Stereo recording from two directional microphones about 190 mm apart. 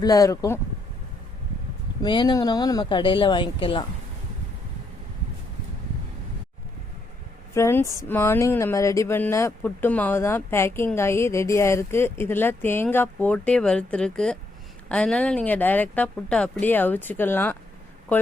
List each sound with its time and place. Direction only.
0.0 s speech: 20° left (ahead or behind)
2.0 s speech: 20° left (ahead or behind)
7.5 s speech: 15° left (ahead or behind)